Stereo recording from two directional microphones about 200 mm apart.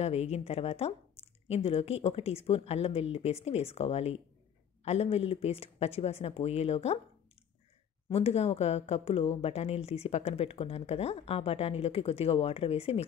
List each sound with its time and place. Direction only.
0.0 s a woman's voice: 30° left (ahead or behind)
8.1 s a woman's voice: 30° left (ahead or behind)